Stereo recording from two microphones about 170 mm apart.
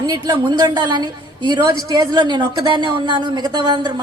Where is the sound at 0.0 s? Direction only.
25° right (ahead or behind).